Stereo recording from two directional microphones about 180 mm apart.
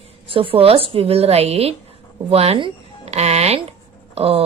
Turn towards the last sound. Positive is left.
turn(degrees=-35)  # may be behind; listen again after turning